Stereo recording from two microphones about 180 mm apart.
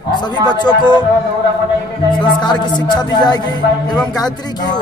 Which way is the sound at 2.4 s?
25° left (ahead or behind).